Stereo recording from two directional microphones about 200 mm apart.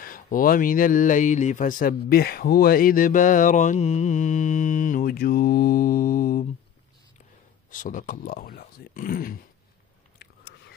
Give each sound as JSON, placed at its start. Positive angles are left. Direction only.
{"t": 0.0, "sound": "speech", "side_deg": 45}
{"t": 7.7, "sound": "speech", "side_deg": 40}